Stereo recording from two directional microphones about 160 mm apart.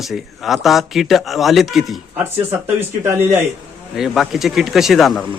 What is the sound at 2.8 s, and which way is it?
Speech, 15° right (ahead or behind).